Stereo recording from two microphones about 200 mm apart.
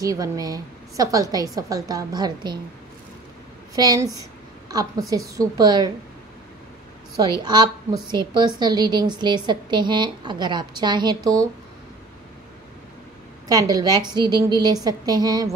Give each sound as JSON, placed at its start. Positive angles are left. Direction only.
{"t": 0.0, "sound": "a woman's voice", "side_deg": -15}
{"t": 3.7, "sound": "a woman's voice", "side_deg": -20}
{"t": 7.2, "sound": "a woman's voice", "side_deg": -20}
{"t": 13.5, "sound": "a woman's voice", "side_deg": -20}